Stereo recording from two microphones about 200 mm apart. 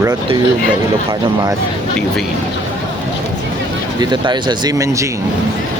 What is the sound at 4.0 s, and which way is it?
Speech, 20° right (ahead or behind).